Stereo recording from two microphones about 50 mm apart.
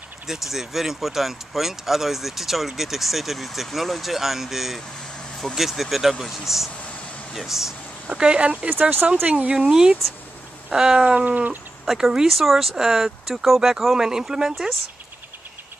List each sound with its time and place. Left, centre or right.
0.3 s speech: centre
8.1 s speech: centre
11.1 s cat: right
11.8 s speech: centre